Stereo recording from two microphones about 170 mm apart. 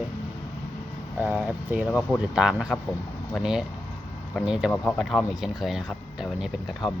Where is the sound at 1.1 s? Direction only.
10° right (ahead or behind).